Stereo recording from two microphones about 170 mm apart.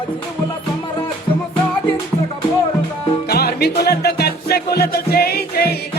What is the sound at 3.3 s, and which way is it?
Music, 65° left (ahead or behind).